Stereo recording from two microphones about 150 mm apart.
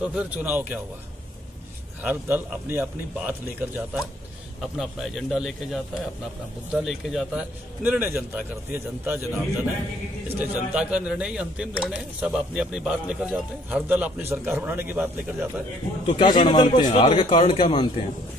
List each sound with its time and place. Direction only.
0.0 s speech: 10° right (ahead or behind)
2.0 s speech: 15° right (ahead or behind)
4.7 s a man's voice: centre (ahead or behind)
16.1 s speech: 30° left (ahead or behind)
16.9 s speech: 40° left (ahead or behind)